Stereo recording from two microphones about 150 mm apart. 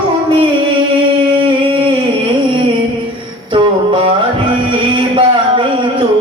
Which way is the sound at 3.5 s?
35° right (ahead or behind).